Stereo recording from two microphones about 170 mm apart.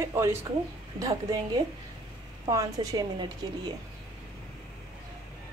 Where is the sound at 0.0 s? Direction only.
15° right (ahead or behind).